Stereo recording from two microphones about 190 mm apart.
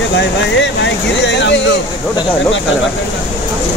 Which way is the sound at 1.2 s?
70° left (ahead or behind).